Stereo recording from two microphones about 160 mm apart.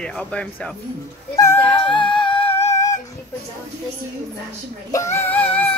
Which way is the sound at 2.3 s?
35° left (ahead or behind).